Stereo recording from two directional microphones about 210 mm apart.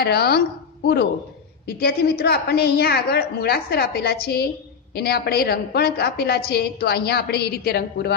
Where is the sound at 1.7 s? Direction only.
50° left (ahead or behind).